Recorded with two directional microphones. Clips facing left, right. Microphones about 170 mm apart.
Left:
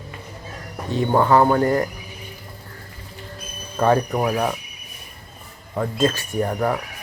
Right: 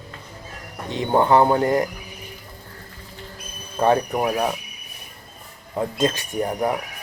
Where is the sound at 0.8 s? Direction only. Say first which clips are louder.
Left 1 dB; 20° right (ahead or behind).